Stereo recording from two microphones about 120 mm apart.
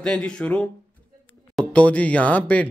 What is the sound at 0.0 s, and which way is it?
Speech, 10° left (ahead or behind).